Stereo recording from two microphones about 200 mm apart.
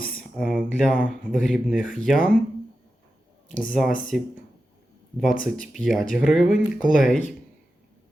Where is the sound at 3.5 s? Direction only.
40° left (ahead or behind).